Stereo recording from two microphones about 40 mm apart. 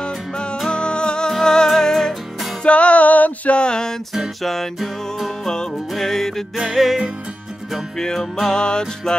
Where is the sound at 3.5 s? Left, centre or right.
Left.